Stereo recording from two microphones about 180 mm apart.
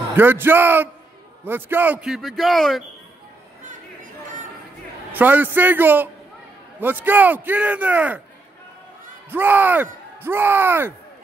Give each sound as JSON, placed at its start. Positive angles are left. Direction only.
{"t": 0.1, "sound": "a man's voice", "side_deg": -10}
{"t": 3.6, "sound": "chatter", "side_deg": -45}
{"t": 5.1, "sound": "a man's voice", "side_deg": -10}
{"t": 9.3, "sound": "a man's voice", "side_deg": -10}